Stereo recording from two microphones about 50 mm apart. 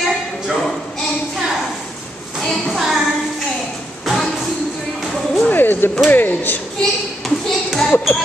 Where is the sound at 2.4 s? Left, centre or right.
Centre.